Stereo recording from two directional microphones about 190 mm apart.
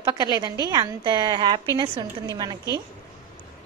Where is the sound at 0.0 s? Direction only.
25° right (ahead or behind).